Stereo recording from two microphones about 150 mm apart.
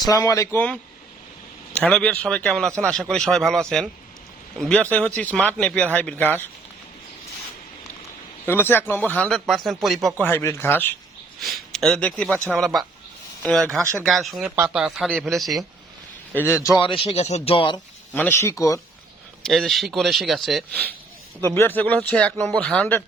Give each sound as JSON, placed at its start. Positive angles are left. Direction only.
{"t": 0.0, "sound": "speech", "side_deg": 25}
{"t": 1.7, "sound": "a man's voice", "side_deg": 5}
{"t": 8.4, "sound": "a man's voice", "side_deg": 15}
{"t": 10.2, "sound": "speech", "side_deg": 15}
{"t": 11.3, "sound": "a man's voice", "side_deg": 0}
{"t": 16.5, "sound": "speech", "side_deg": 20}
{"t": 16.8, "sound": "speech", "side_deg": 40}
{"t": 18.1, "sound": "speech", "side_deg": 15}
{"t": 19.4, "sound": "a man's voice", "side_deg": 0}
{"t": 21.4, "sound": "speech", "side_deg": 15}